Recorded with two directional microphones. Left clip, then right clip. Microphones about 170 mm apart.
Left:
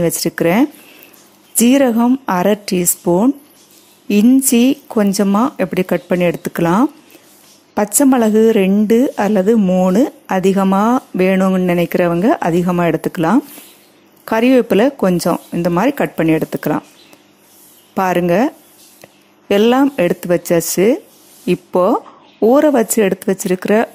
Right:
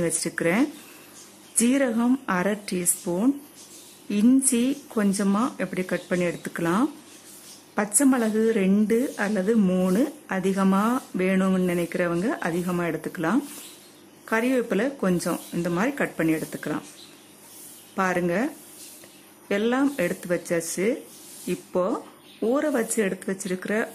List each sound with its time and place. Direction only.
0.0 s speech: 35° left (ahead or behind)
4.5 s speech: 35° left (ahead or behind)
9.6 s speech: 20° left (ahead or behind)
9.9 s speech: 35° left (ahead or behind)
17.9 s speech: 40° left (ahead or behind)